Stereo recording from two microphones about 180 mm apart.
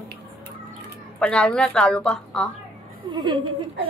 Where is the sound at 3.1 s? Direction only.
25° right (ahead or behind).